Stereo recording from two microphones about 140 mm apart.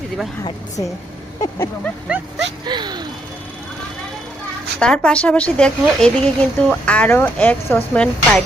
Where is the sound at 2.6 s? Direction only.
30° right (ahead or behind).